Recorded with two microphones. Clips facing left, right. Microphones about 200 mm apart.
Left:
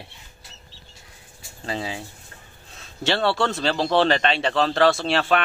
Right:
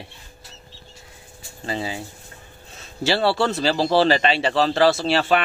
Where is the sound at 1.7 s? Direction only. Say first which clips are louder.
Right 2 dB; centre (ahead or behind).